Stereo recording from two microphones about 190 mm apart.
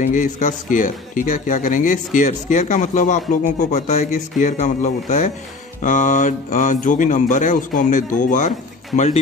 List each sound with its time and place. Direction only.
0.0 s a man's voice: 40° left (ahead or behind)